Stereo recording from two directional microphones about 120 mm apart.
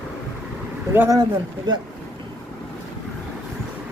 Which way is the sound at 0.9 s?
20° right (ahead or behind).